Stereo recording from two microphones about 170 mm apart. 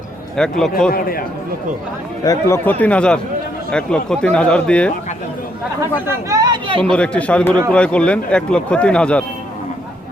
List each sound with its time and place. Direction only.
0.3 s a man's voice: 5° left (ahead or behind)
0.9 s a man's voice: 60° left (ahead or behind)
2.2 s speech: 20° left (ahead or behind)
2.6 s a man's voice: 10° left (ahead or behind)
6.2 s speech: 20° right (ahead or behind)
6.9 s speech: 5° left (ahead or behind)